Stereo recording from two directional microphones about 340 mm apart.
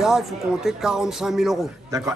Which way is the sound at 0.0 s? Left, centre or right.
Centre.